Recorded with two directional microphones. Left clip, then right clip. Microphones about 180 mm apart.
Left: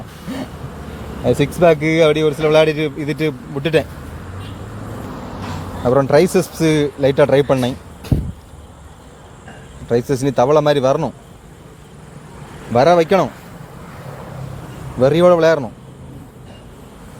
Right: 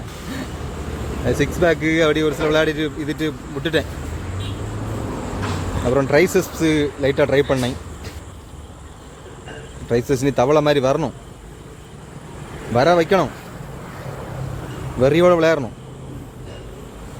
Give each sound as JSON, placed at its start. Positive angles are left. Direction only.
{"t": 1.2, "sound": "speech", "side_deg": 25}
{"t": 6.1, "sound": "speech", "side_deg": 20}
{"t": 9.9, "sound": "speech", "side_deg": 20}
{"t": 12.7, "sound": "speech", "side_deg": 30}
{"t": 14.9, "sound": "speech", "side_deg": 15}